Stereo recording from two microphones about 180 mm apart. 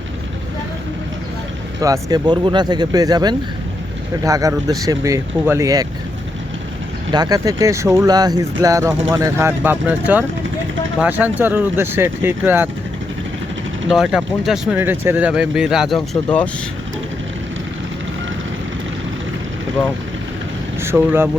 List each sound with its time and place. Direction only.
1.8 s speech: 20° right (ahead or behind)
7.1 s speech: 20° right (ahead or behind)
13.8 s speech: 5° right (ahead or behind)
20.8 s speech: 10° right (ahead or behind)